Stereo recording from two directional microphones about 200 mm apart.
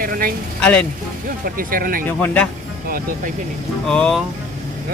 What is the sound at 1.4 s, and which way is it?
Speech, 45° right (ahead or behind).